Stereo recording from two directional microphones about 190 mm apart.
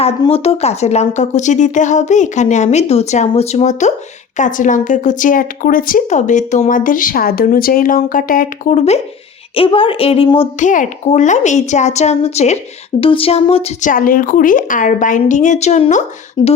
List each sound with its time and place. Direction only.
0.2 s speech: 30° left (ahead or behind)
10.7 s speech: 40° left (ahead or behind)
13.9 s speech: 45° left (ahead or behind)